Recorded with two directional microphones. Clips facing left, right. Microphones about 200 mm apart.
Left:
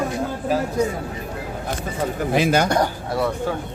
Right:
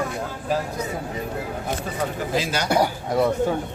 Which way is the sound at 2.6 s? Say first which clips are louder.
Even; 10° right (ahead or behind).